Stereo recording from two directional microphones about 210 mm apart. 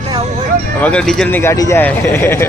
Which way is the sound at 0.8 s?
5° left (ahead or behind).